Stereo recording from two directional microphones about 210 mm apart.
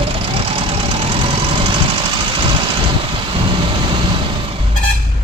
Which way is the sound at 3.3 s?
25° right (ahead or behind).